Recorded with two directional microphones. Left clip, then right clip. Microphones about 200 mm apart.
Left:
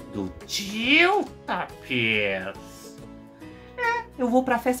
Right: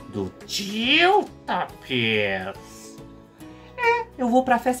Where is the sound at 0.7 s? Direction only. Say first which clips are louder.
Even; 15° left (ahead or behind).